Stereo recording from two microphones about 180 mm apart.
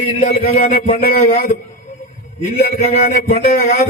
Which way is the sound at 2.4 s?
55° left (ahead or behind).